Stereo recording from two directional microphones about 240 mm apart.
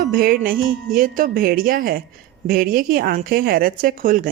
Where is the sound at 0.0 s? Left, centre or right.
Right.